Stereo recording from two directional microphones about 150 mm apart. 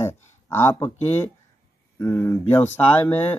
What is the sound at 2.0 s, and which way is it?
Speech, 20° left (ahead or behind).